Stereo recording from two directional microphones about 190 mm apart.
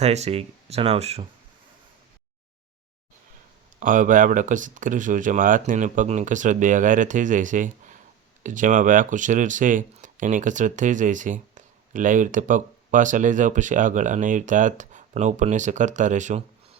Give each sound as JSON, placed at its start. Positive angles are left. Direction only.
{"t": 0.0, "sound": "speech", "side_deg": -35}
{"t": 3.8, "sound": "speech", "side_deg": -45}